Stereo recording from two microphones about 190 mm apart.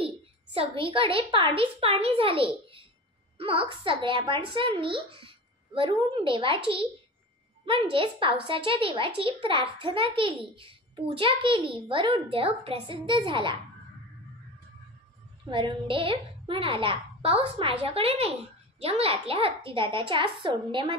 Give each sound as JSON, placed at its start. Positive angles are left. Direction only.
{"t": 0.0, "sound": "a woman's voice", "side_deg": -30}
{"t": 15.5, "sound": "a woman's voice", "side_deg": -25}